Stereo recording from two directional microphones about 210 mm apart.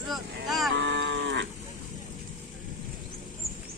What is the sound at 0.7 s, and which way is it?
Moo, 55° right (ahead or behind).